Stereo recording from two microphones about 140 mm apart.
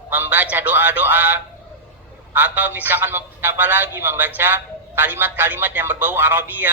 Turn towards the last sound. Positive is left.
turn(degrees=-15)  # may be behind; listen again after turning